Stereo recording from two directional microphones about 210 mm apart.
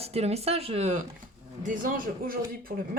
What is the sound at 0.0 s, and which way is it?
Speech, 30° right (ahead or behind).